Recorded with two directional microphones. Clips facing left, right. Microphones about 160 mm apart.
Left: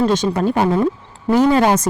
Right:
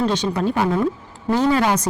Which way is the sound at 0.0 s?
45° left (ahead or behind).